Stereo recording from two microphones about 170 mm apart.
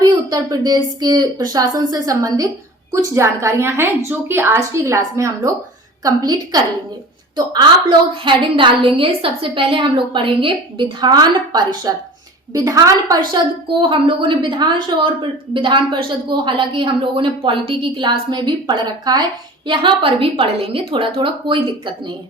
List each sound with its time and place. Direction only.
0.0 s a woman's voice: 20° right (ahead or behind)